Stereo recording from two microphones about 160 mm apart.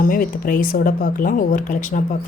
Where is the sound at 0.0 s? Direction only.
60° left (ahead or behind).